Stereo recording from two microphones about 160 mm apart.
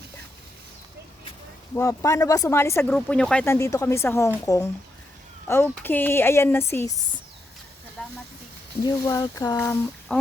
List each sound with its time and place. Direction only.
1.7 s a woman's voice: 15° left (ahead or behind)
2.9 s speech: 5° left (ahead or behind)
3.4 s a woman's voice: 15° left (ahead or behind)
8.0 s a sound: 5° left (ahead or behind)
8.8 s speech: 20° left (ahead or behind)
9.6 s speech: 10° left (ahead or behind)